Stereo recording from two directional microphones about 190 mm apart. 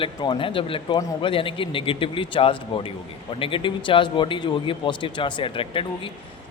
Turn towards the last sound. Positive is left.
turn(degrees=25)  # may be behind; listen again after turning